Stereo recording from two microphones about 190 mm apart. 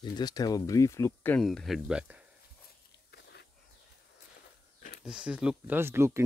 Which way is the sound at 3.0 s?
60° left (ahead or behind).